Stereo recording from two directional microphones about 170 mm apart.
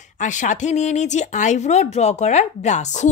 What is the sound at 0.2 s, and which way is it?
Speech, 45° left (ahead or behind).